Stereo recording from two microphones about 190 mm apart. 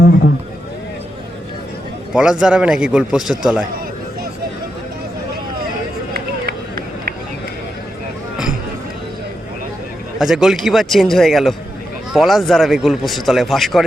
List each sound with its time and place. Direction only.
2.1 s a man's voice: 5° right (ahead or behind)
6.1 s run: 55° right (ahead or behind)
10.2 s a man's voice: centre (ahead or behind)